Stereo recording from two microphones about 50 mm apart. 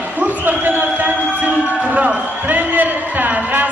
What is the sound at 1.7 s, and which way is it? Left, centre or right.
Basketball bounce, right.